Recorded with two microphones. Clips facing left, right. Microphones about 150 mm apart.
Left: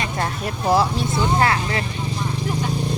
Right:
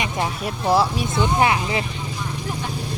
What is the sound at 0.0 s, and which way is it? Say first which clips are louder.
Speech: even; 10° right (ahead or behind).